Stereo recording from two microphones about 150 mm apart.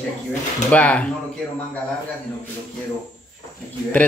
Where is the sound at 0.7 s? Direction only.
10° left (ahead or behind).